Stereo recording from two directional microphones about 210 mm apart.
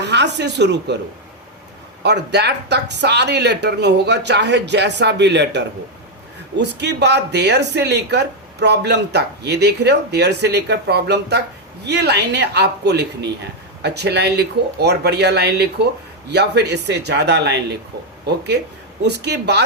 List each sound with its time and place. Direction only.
0.0 s speech: 55° right (ahead or behind)
2.0 s speech: 55° right (ahead or behind)
19.0 s speech: 55° right (ahead or behind)